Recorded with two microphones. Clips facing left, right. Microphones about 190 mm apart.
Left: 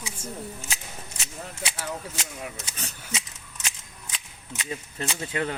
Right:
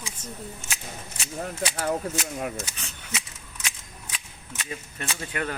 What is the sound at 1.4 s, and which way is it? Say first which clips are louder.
Speech: right 7 dB; 55° right (ahead or behind).